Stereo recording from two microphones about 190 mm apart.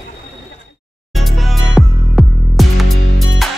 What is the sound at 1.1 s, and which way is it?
Music, centre (ahead or behind).